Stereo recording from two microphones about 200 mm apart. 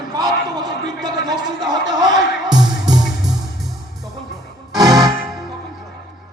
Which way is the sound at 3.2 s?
Centre (ahead or behind).